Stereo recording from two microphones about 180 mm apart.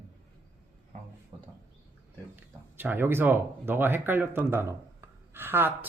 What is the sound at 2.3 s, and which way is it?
Speech, 10° right (ahead or behind).